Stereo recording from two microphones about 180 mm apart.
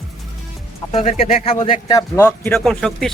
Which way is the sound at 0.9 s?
35° left (ahead or behind).